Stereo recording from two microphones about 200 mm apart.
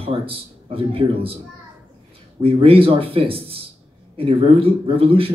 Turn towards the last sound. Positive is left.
turn(degrees=-30)  # may be behind; listen again after turning